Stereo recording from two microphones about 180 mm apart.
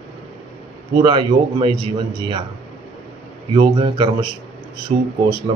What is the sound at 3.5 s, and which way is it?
Speech, 25° right (ahead or behind).